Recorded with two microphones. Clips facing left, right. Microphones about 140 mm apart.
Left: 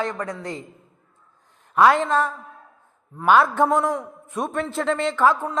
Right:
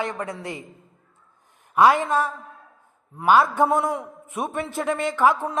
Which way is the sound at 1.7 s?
10° right (ahead or behind).